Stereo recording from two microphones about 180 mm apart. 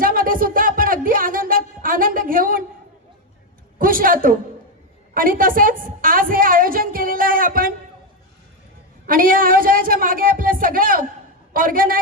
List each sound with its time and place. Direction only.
0.0 s music: 50° right (ahead or behind)
3.8 s a woman's voice: 50° right (ahead or behind)
9.0 s a man's voice: 50° right (ahead or behind)